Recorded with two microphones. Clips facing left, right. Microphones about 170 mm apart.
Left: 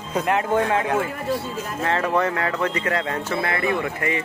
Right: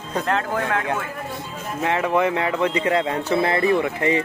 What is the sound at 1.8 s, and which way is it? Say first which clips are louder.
Speech: right 2 dB; 15° right (ahead or behind).